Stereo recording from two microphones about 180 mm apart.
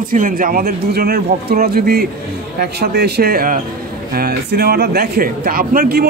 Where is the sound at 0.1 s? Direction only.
50° right (ahead or behind).